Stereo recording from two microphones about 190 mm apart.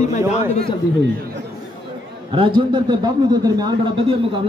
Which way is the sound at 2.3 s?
25° right (ahead or behind).